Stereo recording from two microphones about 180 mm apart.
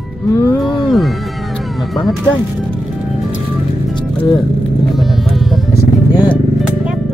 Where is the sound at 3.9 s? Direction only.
25° left (ahead or behind).